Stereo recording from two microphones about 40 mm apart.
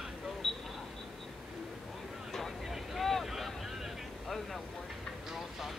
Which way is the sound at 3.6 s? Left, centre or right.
Centre.